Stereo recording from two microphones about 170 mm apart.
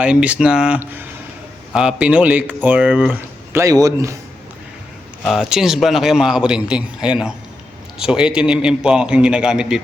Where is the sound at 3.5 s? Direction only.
20° right (ahead or behind).